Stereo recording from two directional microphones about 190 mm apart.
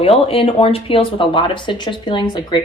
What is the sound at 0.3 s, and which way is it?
Speech, 30° left (ahead or behind).